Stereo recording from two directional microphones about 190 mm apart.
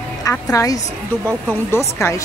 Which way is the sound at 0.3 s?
15° left (ahead or behind).